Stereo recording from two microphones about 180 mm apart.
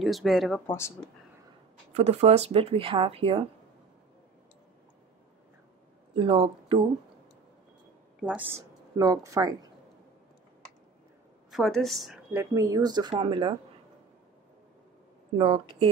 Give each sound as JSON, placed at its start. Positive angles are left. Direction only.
{"t": 0.0, "sound": "speech", "side_deg": 0}
{"t": 0.7, "sound": "speech", "side_deg": 15}
{"t": 2.0, "sound": "speech", "side_deg": -35}
{"t": 6.1, "sound": "speech", "side_deg": -30}
{"t": 8.2, "sound": "a woman's voice", "side_deg": 0}
{"t": 8.5, "sound": "speech", "side_deg": -15}
{"t": 11.5, "sound": "speech", "side_deg": 0}
{"t": 15.3, "sound": "speech", "side_deg": -30}